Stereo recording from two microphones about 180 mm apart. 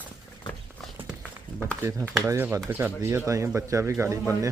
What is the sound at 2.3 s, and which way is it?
Speech, 15° right (ahead or behind).